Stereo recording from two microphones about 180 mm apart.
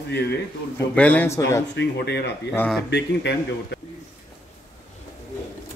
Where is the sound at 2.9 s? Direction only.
70° left (ahead or behind).